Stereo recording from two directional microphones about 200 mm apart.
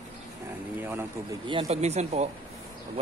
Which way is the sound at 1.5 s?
30° right (ahead or behind).